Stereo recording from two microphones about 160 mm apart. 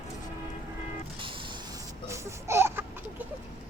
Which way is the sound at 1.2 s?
30° right (ahead or behind).